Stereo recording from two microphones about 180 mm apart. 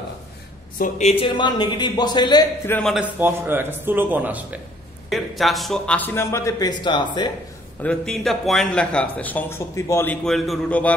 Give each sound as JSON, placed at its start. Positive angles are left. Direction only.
{"t": 0.7, "sound": "speech", "side_deg": 45}
{"t": 1.2, "sound": "speech", "side_deg": 25}
{"t": 2.6, "sound": "a man's voice", "side_deg": 10}
{"t": 2.9, "sound": "a man's voice", "side_deg": -10}
{"t": 7.8, "sound": "a man's voice", "side_deg": 5}
{"t": 10.2, "sound": "a man's voice", "side_deg": 0}